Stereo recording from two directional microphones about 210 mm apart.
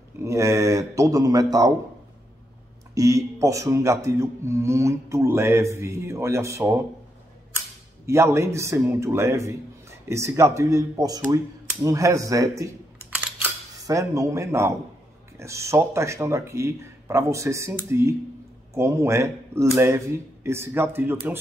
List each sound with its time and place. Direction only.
0.2 s speech: 15° right (ahead or behind)
2.9 s speech: 15° right (ahead or behind)
8.1 s speech: 15° right (ahead or behind)